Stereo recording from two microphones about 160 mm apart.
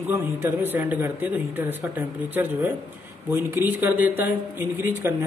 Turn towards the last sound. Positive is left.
turn(degrees=-15)  # may be behind; listen again after turning